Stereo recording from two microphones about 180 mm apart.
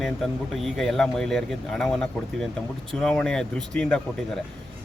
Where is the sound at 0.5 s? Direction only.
Centre (ahead or behind).